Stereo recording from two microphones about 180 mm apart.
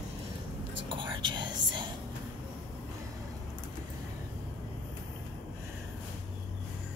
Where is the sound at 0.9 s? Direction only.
25° right (ahead or behind).